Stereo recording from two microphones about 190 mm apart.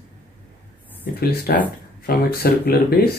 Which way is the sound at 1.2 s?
55° left (ahead or behind).